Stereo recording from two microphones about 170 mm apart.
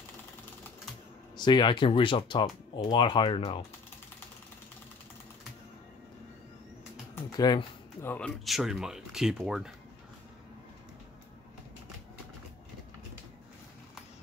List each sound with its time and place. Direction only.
1.3 s speech: 25° left (ahead or behind)
7.3 s speech: 25° left (ahead or behind)
8.1 s speech: centre (ahead or behind)